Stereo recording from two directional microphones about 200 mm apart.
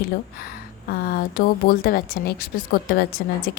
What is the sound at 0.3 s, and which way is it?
Speech, 50° left (ahead or behind).